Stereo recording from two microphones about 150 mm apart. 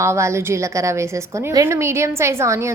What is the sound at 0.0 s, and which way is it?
A woman's voice, 20° right (ahead or behind).